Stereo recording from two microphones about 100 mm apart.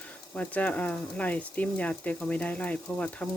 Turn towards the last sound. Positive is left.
turn(degrees=10)  # may be behind; listen again after turning